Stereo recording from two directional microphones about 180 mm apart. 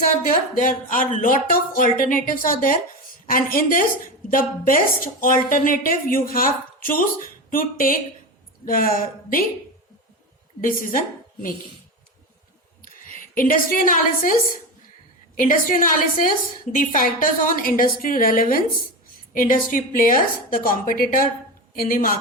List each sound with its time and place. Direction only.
0.6 s speech: 50° left (ahead or behind)
10.6 s speech: 50° left (ahead or behind)
13.3 s speech: 50° left (ahead or behind)